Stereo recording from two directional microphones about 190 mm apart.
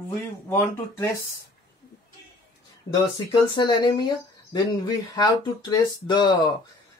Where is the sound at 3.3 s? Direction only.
25° left (ahead or behind).